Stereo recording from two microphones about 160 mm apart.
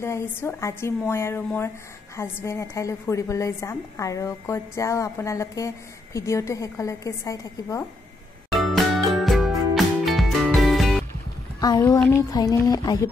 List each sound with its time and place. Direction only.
0.0 s a woman's voice: 15° left (ahead or behind)
8.5 s music: centre (ahead or behind)
12.2 s a woman's voice: 25° left (ahead or behind)